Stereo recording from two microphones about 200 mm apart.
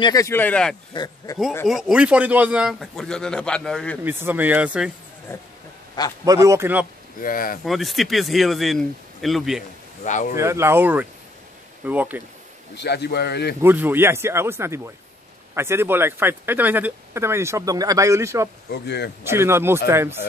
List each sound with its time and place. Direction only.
0.0 s speech: 15° left (ahead or behind)
0.9 s speech: 15° left (ahead or behind)
1.7 s a man's voice: 5° right (ahead or behind)
4.0 s speech: 10° right (ahead or behind)
5.3 s speech: 10° left (ahead or behind)
6.2 s speech: 15° right (ahead or behind)
7.2 s speech: 45° left (ahead or behind)
7.6 s a man's voice: centre (ahead or behind)
10.0 s speech: 40° left (ahead or behind)
10.3 s speech: 15° right (ahead or behind)
12.7 s a man's voice: 55° left (ahead or behind)
13.6 s speech: 10° right (ahead or behind)
18.7 s a man's voice: 55° left (ahead or behind)
19.2 s speech: 10° right (ahead or behind)